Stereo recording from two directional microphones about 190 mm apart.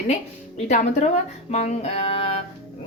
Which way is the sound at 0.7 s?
40° left (ahead or behind).